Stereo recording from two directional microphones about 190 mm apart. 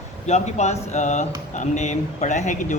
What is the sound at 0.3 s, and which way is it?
Speech, 35° left (ahead or behind).